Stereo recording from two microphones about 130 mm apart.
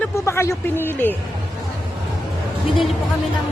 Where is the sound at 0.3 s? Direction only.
20° left (ahead or behind).